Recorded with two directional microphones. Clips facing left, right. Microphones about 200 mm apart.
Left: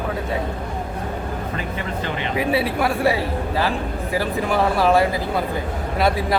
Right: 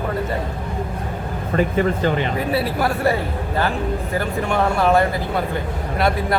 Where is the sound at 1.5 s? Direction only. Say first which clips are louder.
Right 8 dB; 45° right (ahead or behind).